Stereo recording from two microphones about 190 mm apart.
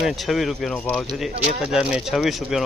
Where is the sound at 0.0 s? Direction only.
Centre (ahead or behind).